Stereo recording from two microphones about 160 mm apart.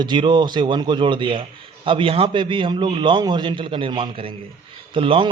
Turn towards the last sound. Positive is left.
turn(degrees=-35)  # may be behind; listen again after turning